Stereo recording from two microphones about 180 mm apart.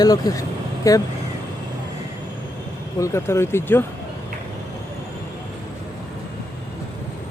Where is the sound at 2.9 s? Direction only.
15° left (ahead or behind).